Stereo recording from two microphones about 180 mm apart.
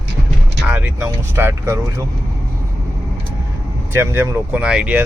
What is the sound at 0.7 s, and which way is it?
Speech, 10° right (ahead or behind).